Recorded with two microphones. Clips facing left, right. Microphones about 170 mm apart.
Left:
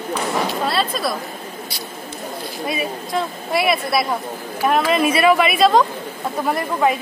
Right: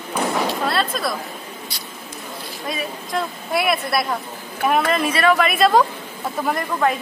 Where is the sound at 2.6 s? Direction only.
5° left (ahead or behind).